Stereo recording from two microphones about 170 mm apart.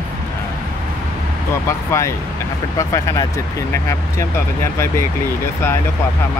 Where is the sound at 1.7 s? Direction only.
15° left (ahead or behind).